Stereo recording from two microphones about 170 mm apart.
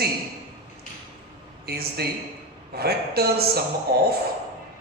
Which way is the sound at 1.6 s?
65° right (ahead or behind).